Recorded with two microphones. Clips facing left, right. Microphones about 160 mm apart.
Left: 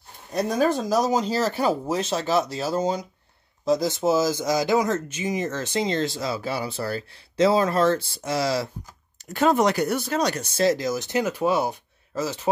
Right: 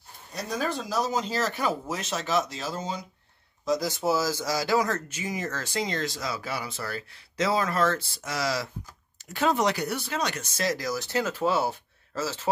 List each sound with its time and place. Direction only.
0.3 s speech: 50° left (ahead or behind)
3.6 s speech: 25° left (ahead or behind)
9.3 s speech: 50° left (ahead or behind); by 12.4 s 15° left (ahead or behind)